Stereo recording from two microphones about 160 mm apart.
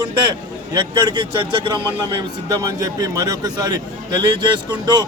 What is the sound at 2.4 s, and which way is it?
A man's voice, 25° right (ahead or behind).